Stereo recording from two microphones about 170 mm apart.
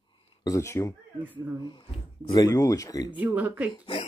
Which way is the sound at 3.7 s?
35° left (ahead or behind).